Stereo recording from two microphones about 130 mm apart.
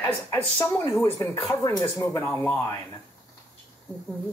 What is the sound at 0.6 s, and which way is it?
Speech, 20° left (ahead or behind).